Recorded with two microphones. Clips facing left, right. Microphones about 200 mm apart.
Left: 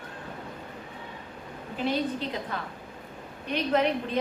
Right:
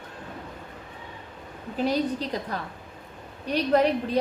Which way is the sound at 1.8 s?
40° right (ahead or behind).